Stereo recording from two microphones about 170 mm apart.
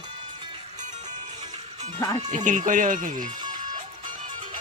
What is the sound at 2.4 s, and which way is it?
Speech, 50° right (ahead or behind).